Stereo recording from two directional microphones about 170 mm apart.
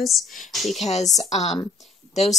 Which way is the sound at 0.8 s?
40° left (ahead or behind).